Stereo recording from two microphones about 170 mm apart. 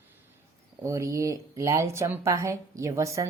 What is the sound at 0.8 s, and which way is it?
Speech, 20° right (ahead or behind).